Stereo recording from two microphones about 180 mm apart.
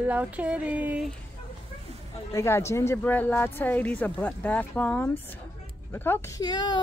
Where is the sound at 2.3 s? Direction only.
15° left (ahead or behind).